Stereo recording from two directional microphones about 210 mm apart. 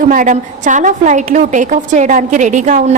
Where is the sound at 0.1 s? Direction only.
40° right (ahead or behind).